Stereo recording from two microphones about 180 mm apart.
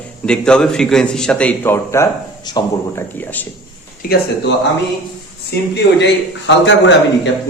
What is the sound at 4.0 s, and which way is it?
Speech, 60° left (ahead or behind).